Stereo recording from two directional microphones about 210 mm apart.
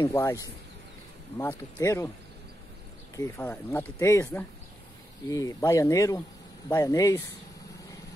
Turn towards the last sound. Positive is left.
turn(degrees=15)  # may be behind; listen again after turning